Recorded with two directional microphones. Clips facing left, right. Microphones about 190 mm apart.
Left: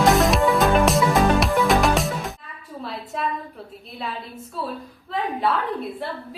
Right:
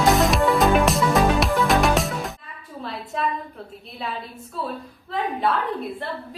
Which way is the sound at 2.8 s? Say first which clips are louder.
Right 1 dB; centre (ahead or behind).